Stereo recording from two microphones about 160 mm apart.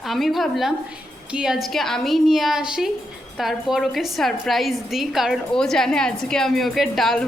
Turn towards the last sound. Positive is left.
turn(degrees=0)  # may be behind; listen again after turning